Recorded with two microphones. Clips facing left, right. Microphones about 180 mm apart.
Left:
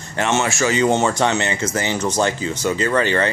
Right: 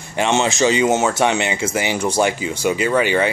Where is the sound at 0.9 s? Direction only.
5° right (ahead or behind).